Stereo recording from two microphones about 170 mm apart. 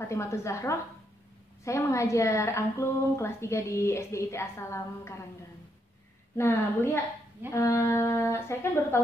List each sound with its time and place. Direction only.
0.1 s a woman's voice: 15° left (ahead or behind)
6.3 s a woman's voice: 15° left (ahead or behind)